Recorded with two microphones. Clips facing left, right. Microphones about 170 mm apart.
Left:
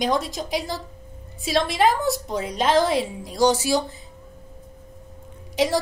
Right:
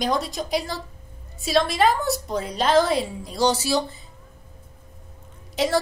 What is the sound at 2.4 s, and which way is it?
Speech, centre (ahead or behind).